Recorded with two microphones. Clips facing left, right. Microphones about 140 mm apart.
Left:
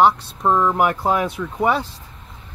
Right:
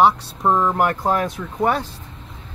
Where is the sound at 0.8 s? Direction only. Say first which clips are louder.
Left 1 dB; 5° left (ahead or behind).